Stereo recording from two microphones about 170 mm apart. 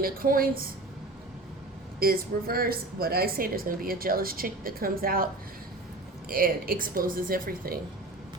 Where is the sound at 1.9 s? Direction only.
60° right (ahead or behind).